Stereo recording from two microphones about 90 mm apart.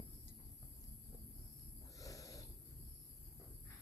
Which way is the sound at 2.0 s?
40° left (ahead or behind).